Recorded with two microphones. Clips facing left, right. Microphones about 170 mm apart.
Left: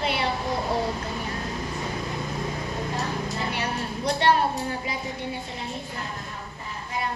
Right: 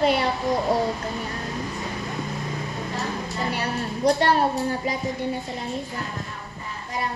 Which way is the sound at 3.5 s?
40° right (ahead or behind).